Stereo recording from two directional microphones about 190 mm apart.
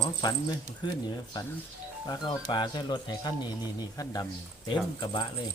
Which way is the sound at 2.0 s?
20° left (ahead or behind).